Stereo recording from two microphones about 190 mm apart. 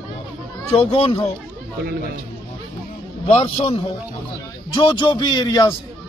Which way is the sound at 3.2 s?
30° left (ahead or behind).